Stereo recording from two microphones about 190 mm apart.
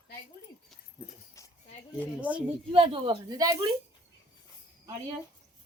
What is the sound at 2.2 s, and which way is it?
Speech, 5° right (ahead or behind).